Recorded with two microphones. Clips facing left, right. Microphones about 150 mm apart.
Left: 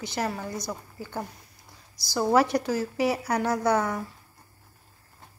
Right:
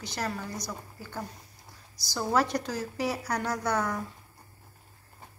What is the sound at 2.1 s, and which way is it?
A woman's voice, 10° left (ahead or behind).